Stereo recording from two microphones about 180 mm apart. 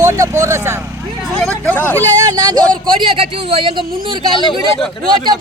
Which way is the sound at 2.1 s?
20° right (ahead or behind).